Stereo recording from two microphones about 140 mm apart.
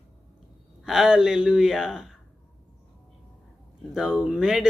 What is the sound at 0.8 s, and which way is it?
Speech, 5° right (ahead or behind).